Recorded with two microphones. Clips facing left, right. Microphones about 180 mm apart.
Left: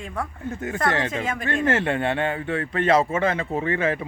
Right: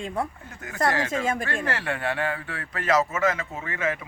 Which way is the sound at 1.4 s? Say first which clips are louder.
Left 6 dB; 20° left (ahead or behind).